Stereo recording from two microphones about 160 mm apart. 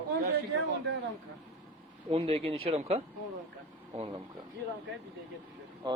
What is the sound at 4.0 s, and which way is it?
Speech, 25° right (ahead or behind).